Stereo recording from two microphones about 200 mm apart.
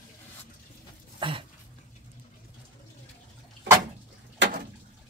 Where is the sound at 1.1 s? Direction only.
25° right (ahead or behind).